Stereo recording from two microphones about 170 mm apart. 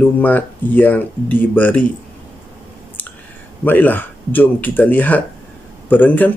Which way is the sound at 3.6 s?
10° left (ahead or behind).